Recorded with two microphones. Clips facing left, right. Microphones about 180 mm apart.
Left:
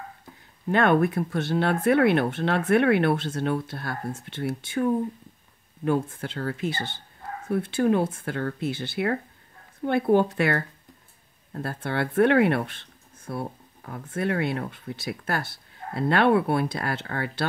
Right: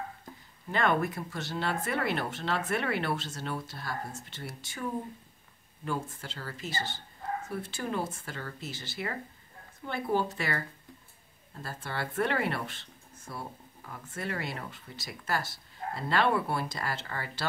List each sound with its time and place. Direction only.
0.7 s speech: 60° left (ahead or behind)